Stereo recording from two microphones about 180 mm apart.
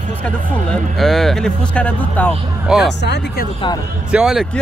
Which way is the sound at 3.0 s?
70° left (ahead or behind).